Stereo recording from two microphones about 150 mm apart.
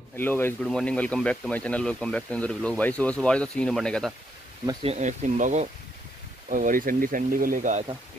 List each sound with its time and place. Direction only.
0.1 s speech: 15° left (ahead or behind)
4.8 s speech: 50° right (ahead or behind)
6.5 s speech: 65° right (ahead or behind)